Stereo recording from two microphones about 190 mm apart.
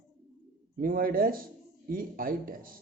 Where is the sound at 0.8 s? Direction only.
50° right (ahead or behind).